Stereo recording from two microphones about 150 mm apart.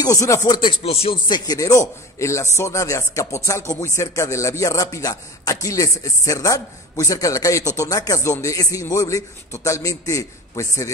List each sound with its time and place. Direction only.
0.0 s speech: 20° left (ahead or behind)